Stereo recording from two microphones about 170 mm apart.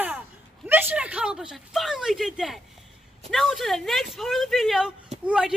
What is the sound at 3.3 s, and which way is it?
A woman's voice, centre (ahead or behind).